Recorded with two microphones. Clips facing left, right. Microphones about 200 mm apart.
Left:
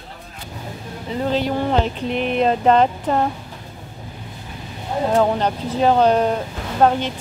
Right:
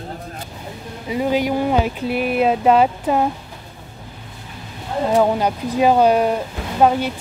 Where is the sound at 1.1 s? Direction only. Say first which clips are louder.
Right 2 dB; 10° right (ahead or behind).